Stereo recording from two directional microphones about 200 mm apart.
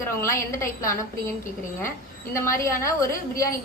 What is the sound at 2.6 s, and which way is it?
Speech, 15° left (ahead or behind).